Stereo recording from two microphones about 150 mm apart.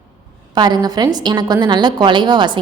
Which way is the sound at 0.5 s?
30° right (ahead or behind).